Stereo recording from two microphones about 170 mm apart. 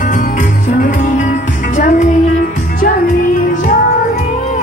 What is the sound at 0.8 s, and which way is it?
Music, 50° left (ahead or behind).